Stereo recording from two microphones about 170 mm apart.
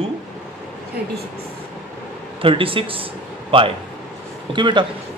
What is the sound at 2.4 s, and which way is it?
A man's voice, 30° right (ahead or behind).